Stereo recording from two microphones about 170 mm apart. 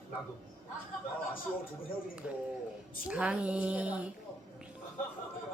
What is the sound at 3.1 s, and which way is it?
Speech, 5° right (ahead or behind).